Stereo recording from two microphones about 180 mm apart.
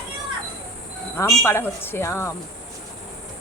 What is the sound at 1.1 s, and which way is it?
Speech, 15° left (ahead or behind).